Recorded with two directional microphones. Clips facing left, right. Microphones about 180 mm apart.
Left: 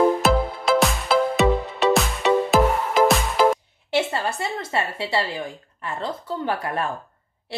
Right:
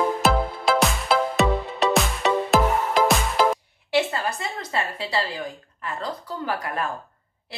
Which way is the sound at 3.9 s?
25° left (ahead or behind).